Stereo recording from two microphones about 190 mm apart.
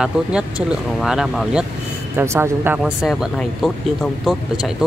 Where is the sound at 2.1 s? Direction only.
15° right (ahead or behind).